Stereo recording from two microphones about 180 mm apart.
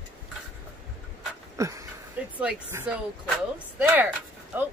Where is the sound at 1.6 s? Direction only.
15° right (ahead or behind).